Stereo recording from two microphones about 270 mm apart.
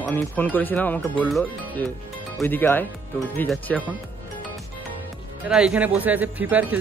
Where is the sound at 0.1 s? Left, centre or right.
Centre.